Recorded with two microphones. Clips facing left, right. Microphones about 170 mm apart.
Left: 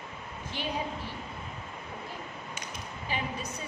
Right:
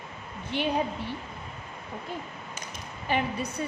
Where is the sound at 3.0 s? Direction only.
60° right (ahead or behind).